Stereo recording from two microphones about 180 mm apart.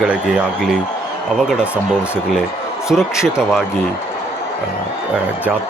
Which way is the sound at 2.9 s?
5° right (ahead or behind).